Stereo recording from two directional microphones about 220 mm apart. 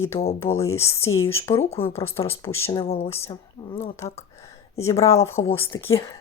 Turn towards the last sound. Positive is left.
turn(degrees=15)  # may be behind; listen again after turning